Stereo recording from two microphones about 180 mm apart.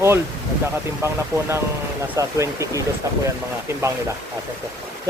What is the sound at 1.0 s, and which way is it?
Speech, 15° right (ahead or behind).